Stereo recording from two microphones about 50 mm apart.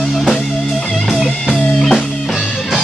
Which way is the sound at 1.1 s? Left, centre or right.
Centre.